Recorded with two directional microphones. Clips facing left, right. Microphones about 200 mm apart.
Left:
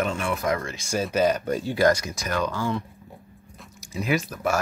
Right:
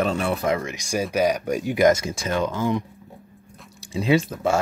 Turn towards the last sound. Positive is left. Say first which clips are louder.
# right 5 dB
turn(degrees=-25)  # may be behind; listen again after turning